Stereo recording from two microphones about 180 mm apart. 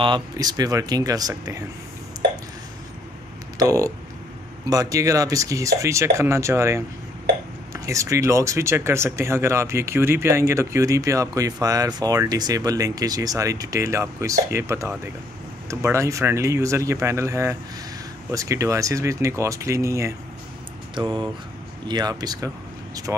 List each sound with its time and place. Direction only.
0.0 s speech: 25° right (ahead or behind)
3.5 s speech: 20° right (ahead or behind)